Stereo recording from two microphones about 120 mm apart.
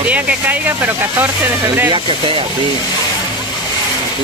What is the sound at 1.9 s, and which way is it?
Speech, 45° right (ahead or behind).